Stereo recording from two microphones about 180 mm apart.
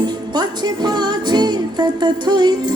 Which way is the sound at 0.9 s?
25° right (ahead or behind).